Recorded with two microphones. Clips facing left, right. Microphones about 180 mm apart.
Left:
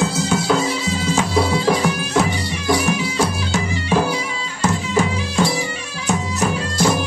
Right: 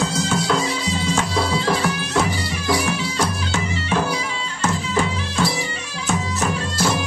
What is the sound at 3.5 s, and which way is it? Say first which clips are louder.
Music: left 3 dB; 10° left (ahead or behind).